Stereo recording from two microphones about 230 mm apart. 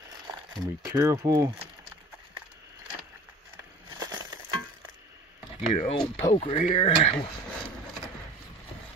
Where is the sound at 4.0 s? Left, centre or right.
Centre.